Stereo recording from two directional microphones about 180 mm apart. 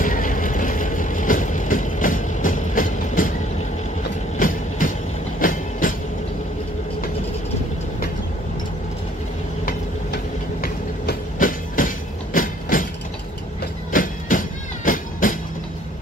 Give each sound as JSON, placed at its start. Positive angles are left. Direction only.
{"t": 0.0, "sound": "vehicle", "side_deg": 50}
{"t": 4.4, "sound": "train", "side_deg": 50}
{"t": 9.7, "sound": "train", "side_deg": 55}
{"t": 13.9, "sound": "train", "side_deg": 50}
{"t": 14.3, "sound": "cat", "side_deg": 50}
{"t": 14.9, "sound": "train", "side_deg": 50}